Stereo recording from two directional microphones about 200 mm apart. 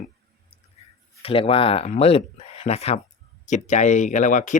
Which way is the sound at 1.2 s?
30° left (ahead or behind).